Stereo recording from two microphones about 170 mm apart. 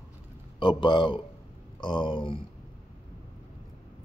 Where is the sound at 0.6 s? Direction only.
25° left (ahead or behind).